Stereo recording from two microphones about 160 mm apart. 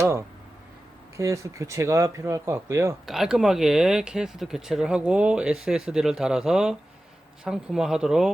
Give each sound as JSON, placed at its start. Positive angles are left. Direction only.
{"t": 1.1, "sound": "speech", "side_deg": -20}
{"t": 3.1, "sound": "speech", "side_deg": -5}